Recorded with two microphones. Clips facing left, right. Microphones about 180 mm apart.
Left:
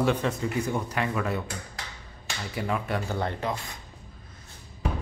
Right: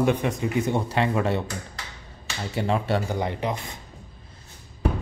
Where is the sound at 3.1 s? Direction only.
15° right (ahead or behind).